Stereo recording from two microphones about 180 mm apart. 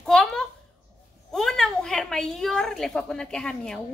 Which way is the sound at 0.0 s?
5° left (ahead or behind).